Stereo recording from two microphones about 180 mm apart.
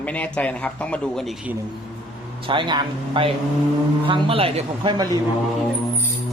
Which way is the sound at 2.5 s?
25° right (ahead or behind).